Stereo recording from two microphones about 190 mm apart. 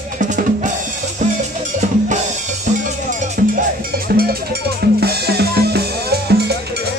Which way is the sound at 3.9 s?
55° right (ahead or behind).